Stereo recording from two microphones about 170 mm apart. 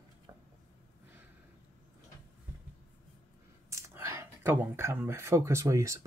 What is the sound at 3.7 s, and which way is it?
Speech, 15° right (ahead or behind).